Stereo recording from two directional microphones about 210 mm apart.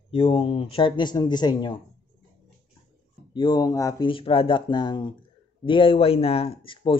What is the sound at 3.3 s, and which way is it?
Speech, 20° left (ahead or behind).